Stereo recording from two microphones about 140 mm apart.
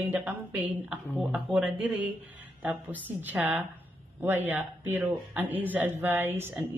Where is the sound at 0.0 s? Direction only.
10° right (ahead or behind).